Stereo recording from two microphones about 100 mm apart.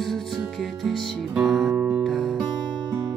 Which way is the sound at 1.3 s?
Centre (ahead or behind).